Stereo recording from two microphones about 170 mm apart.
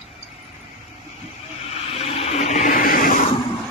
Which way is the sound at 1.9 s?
35° left (ahead or behind).